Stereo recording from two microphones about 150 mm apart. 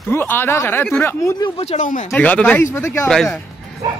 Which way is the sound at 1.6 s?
45° left (ahead or behind).